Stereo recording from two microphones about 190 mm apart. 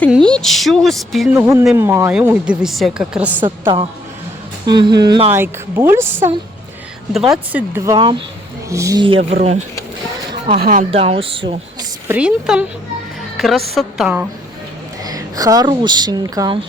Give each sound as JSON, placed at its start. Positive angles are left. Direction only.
{"t": 0.1, "sound": "speech", "side_deg": 5}
{"t": 1.3, "sound": "a woman's voice", "side_deg": -10}
{"t": 4.6, "sound": "speech", "side_deg": -20}
{"t": 5.3, "sound": "a woman's voice", "side_deg": -10}
{"t": 7.1, "sound": "a woman's voice", "side_deg": 0}
{"t": 12.0, "sound": "a woman's voice", "side_deg": -5}
{"t": 15.0, "sound": "speech", "side_deg": -20}